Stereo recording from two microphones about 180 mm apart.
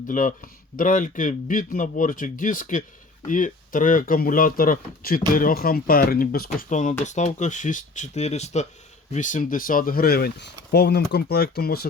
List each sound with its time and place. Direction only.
0.1 s speech: 45° left (ahead or behind)